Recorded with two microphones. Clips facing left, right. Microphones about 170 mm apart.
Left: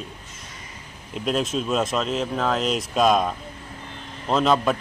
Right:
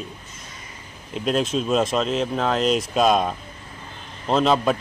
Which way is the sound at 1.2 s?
Centre (ahead or behind).